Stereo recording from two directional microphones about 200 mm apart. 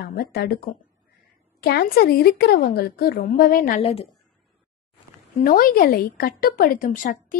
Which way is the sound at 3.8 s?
30° left (ahead or behind).